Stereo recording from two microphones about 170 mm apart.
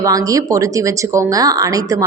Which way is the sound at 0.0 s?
20° right (ahead or behind).